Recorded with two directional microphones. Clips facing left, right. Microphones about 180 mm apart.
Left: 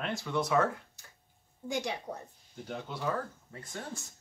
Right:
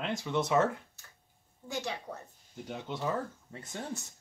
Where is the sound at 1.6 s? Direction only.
15° left (ahead or behind).